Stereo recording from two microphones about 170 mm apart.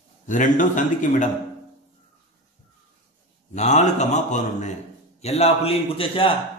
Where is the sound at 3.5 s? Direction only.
45° left (ahead or behind).